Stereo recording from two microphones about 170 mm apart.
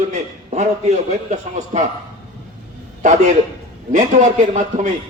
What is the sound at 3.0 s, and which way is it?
A man's voice, 45° right (ahead or behind).